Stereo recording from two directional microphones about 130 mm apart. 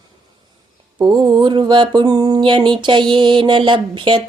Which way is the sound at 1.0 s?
35° right (ahead or behind).